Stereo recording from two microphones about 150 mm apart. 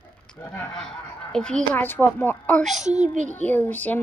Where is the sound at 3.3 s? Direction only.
10° left (ahead or behind).